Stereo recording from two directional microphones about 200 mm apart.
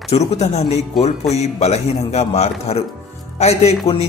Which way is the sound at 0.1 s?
35° left (ahead or behind).